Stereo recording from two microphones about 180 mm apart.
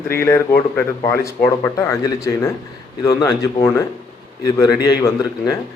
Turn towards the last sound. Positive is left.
turn(degrees=20)  # may be behind; listen again after turning